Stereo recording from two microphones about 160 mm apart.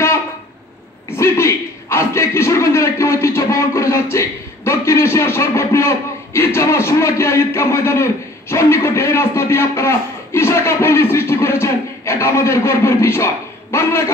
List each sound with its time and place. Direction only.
1.1 s a man's voice: 15° left (ahead or behind)